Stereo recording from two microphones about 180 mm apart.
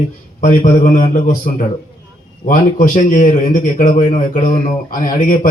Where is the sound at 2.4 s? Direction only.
45° left (ahead or behind).